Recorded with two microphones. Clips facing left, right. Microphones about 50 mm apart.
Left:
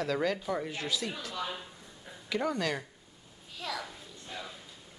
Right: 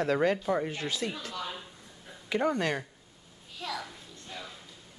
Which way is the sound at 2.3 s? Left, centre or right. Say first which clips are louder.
Right 3 dB; right.